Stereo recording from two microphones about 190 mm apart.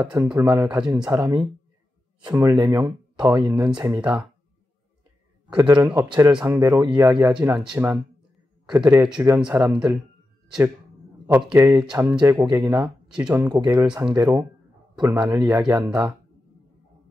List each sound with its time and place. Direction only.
0.0 s speech: 5° right (ahead or behind); by 3.7 s 25° right (ahead or behind)
3.7 s speech: 10° right (ahead or behind)
5.6 s speech: 20° right (ahead or behind)
7.3 s speech: 5° right (ahead or behind)
11.3 s speech: 15° right (ahead or behind)
13.1 s speech: 5° right (ahead or behind)
13.4 s speech: 20° right (ahead or behind)